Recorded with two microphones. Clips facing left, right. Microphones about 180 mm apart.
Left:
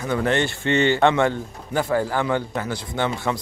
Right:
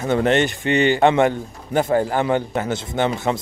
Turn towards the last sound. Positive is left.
turn(degrees=-20)  # may be behind; listen again after turning